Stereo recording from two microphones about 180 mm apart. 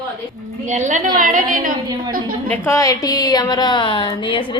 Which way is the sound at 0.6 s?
40° right (ahead or behind).